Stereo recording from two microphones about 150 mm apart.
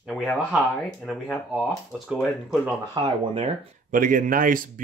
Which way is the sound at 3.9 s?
60° right (ahead or behind).